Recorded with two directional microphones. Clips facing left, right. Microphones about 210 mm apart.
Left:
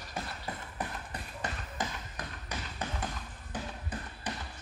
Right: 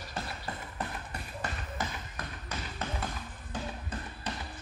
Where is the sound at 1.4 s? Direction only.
20° left (ahead or behind).